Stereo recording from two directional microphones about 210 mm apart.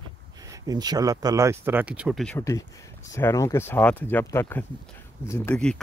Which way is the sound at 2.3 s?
15° left (ahead or behind).